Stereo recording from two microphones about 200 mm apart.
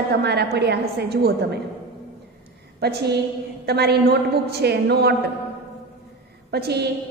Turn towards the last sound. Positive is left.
turn(degrees=-55)  # may be behind; listen again after turning